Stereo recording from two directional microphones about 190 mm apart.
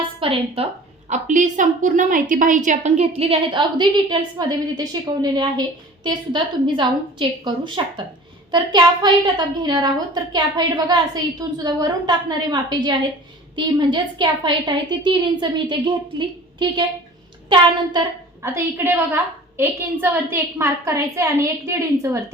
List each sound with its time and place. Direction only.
0.0 s a woman's voice: 30° right (ahead or behind)
1.1 s a woman's voice: 40° right (ahead or behind); by 16.8 s 25° right (ahead or behind)
18.4 s a woman's voice: 15° right (ahead or behind)